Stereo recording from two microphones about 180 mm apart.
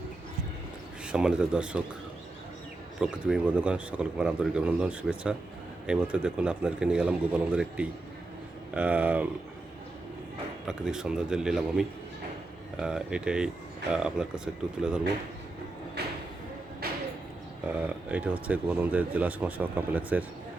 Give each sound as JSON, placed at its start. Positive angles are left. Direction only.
{"t": 1.0, "sound": "speech", "side_deg": -5}
{"t": 3.0, "sound": "speech", "side_deg": -5}
{"t": 10.7, "sound": "speech", "side_deg": -5}
{"t": 16.0, "sound": "a sound", "side_deg": -65}
{"t": 17.7, "sound": "speech", "side_deg": -10}